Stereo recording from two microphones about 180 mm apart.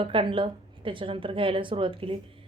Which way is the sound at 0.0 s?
30° right (ahead or behind).